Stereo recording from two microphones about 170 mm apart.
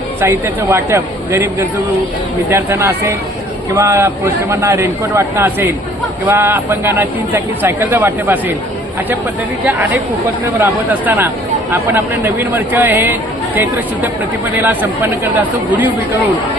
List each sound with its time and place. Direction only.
0.2 s speech: 15° right (ahead or behind)
10.6 s speech: 10° right (ahead or behind)
14.6 s speech: 10° right (ahead or behind)